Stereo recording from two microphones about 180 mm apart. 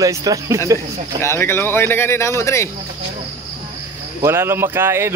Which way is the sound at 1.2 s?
15° left (ahead or behind).